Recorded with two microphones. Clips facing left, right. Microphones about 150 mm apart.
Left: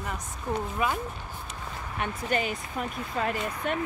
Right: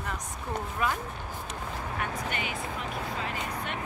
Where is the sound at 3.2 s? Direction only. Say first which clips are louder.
Left 5 dB; 50° left (ahead or behind).